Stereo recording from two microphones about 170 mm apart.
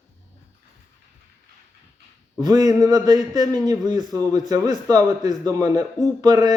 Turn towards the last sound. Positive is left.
turn(degrees=-20)  # may be behind; listen again after turning